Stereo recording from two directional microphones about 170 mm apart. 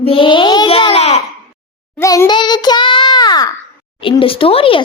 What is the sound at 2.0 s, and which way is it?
A child's voice, 20° left (ahead or behind).